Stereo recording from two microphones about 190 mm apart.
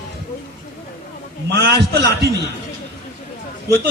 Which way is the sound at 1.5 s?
55° right (ahead or behind).